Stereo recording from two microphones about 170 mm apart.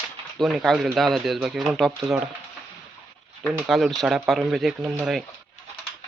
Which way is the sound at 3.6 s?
Centre (ahead or behind).